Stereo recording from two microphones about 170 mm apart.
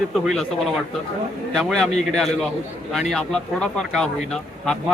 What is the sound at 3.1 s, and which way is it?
Speech, 5° left (ahead or behind).